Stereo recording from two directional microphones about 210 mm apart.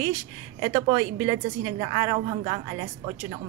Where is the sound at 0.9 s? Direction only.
15° right (ahead or behind).